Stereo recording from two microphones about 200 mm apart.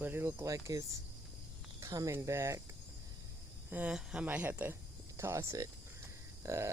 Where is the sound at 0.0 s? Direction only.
10° right (ahead or behind).